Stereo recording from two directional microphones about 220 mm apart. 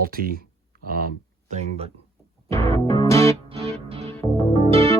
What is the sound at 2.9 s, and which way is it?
Music, 15° left (ahead or behind).